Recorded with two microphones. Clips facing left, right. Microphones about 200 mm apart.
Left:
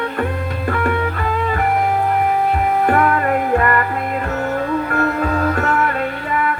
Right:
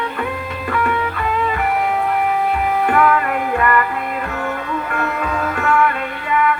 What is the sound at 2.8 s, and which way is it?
Music, 40° left (ahead or behind).